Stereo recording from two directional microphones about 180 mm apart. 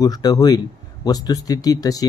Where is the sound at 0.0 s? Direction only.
20° left (ahead or behind).